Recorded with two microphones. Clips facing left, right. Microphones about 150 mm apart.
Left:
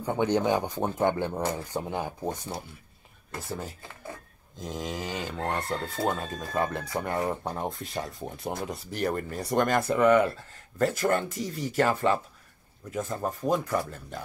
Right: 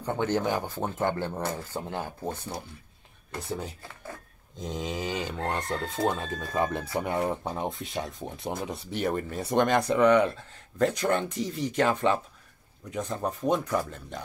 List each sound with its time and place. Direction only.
0.0 s speech: 15° left (ahead or behind)
3.3 s speech: centre (ahead or behind)